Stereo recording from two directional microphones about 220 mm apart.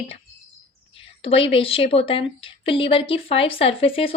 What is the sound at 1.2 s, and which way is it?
A woman's voice, 25° left (ahead or behind).